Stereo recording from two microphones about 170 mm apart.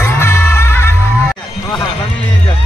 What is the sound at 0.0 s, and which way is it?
Music, 15° left (ahead or behind).